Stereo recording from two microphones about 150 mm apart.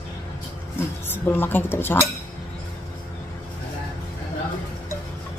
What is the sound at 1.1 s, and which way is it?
Speech, 15° left (ahead or behind).